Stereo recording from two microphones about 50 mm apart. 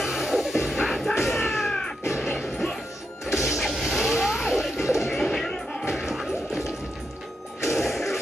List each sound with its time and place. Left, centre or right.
0.0 s music: centre
1.2 s a sound: centre
2.2 s smash: centre
3.3 s music: centre
5.5 s music: centre
5.9 s music: centre
7.6 s music: centre